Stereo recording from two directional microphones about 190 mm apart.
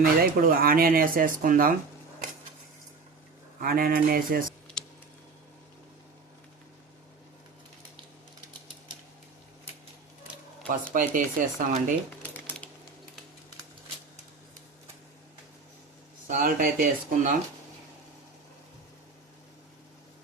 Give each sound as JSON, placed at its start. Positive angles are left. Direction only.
{"t": 0.0, "sound": "speech", "side_deg": -50}
{"t": 3.6, "sound": "speech", "side_deg": -50}
{"t": 4.8, "sound": "a sound", "side_deg": 5}
{"t": 10.7, "sound": "speech", "side_deg": -45}
{"t": 12.2, "sound": "a sound", "side_deg": 10}
{"t": 16.2, "sound": "speech", "side_deg": -45}